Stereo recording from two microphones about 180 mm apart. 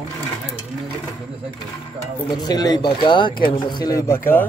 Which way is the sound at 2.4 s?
20° left (ahead or behind).